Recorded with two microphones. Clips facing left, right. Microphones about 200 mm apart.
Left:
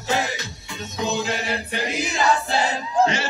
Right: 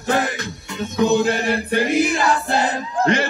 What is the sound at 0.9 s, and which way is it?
Chant, 55° right (ahead or behind).